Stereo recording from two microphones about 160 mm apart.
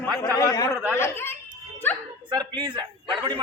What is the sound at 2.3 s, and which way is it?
A man's voice, 30° right (ahead or behind).